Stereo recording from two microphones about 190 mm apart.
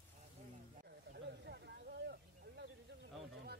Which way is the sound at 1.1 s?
60° right (ahead or behind).